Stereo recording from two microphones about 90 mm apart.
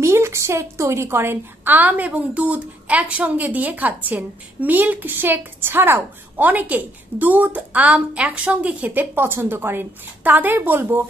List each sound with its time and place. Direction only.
0.0 s a woman's voice: 30° right (ahead or behind)